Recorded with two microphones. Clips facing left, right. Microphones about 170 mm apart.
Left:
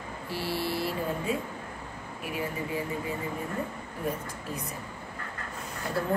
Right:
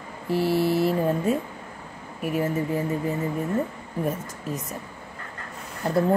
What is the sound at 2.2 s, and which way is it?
Speech, 45° right (ahead or behind).